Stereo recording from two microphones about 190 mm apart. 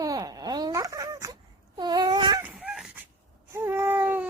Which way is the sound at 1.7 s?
20° right (ahead or behind).